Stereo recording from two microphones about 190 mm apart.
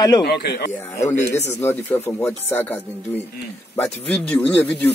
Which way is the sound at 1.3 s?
15° left (ahead or behind).